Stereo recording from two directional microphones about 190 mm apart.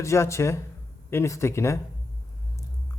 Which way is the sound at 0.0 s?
15° left (ahead or behind).